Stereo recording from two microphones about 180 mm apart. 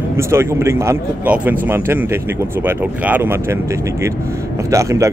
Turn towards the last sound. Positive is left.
turn(degrees=-15)  # may be behind; listen again after turning